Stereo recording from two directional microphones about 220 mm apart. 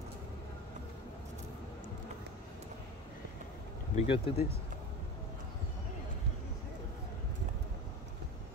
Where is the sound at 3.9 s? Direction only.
25° left (ahead or behind).